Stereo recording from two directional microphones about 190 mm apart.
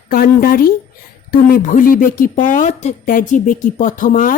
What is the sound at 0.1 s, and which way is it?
A woman's voice, 50° left (ahead or behind).